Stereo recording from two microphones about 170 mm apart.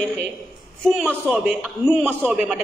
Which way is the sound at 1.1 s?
Centre (ahead or behind).